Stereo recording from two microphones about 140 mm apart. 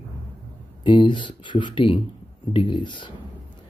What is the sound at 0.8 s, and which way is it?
Speech, 35° left (ahead or behind).